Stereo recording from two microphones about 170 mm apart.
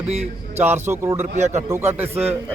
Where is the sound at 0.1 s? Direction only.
40° right (ahead or behind).